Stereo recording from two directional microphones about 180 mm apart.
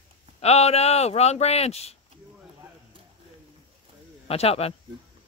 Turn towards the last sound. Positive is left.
turn(degrees=35)  # may be behind; listen again after turning